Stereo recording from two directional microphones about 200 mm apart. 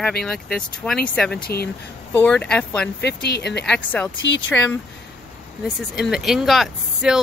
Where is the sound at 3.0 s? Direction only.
55° left (ahead or behind).